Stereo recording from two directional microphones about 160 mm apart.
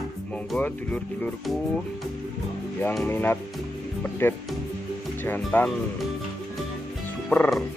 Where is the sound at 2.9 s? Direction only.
10° left (ahead or behind).